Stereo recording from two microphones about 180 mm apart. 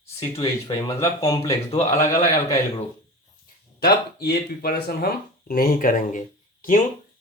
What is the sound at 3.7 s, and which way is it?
Speech, 60° left (ahead or behind).